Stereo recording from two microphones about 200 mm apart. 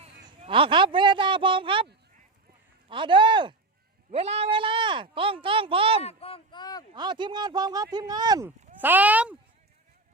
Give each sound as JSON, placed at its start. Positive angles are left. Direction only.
{"t": 0.0, "sound": "speech", "side_deg": -25}
{"t": 2.9, "sound": "speech", "side_deg": -25}
{"t": 6.0, "sound": "a sound", "side_deg": 30}
{"t": 6.9, "sound": "speech", "side_deg": -20}